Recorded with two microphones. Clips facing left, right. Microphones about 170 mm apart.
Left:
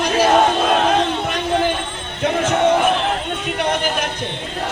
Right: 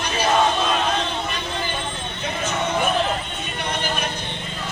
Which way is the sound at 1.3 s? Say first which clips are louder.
Left 9 dB; 75° left (ahead or behind).